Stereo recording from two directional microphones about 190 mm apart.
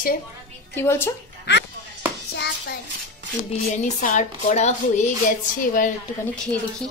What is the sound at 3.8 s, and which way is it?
A woman's voice, 40° left (ahead or behind).